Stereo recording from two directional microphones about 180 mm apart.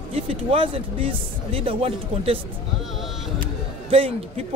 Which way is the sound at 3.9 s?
30° right (ahead or behind).